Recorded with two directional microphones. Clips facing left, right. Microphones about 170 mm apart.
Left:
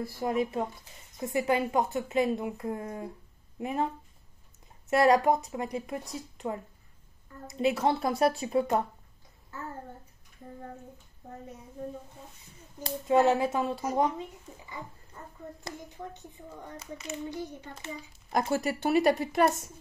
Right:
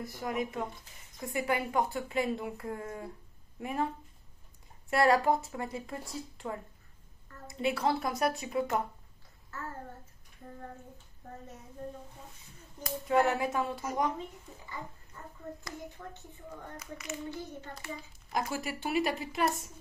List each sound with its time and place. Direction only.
0.2 s a woman's voice: 30° left (ahead or behind)
12.8 s a woman's voice: 20° left (ahead or behind)
16.7 s a woman's voice: 25° left (ahead or behind)
18.5 s speech: 45° left (ahead or behind)